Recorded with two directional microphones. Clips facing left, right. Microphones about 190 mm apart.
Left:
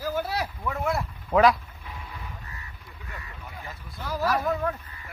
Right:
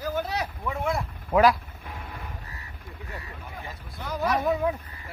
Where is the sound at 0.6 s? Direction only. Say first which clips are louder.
Even; centre (ahead or behind).